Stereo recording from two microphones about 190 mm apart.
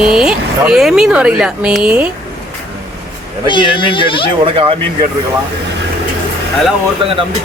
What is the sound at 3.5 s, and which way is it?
Speech, 25° left (ahead or behind).